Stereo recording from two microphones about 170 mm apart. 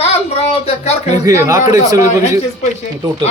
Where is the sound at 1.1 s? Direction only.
20° right (ahead or behind).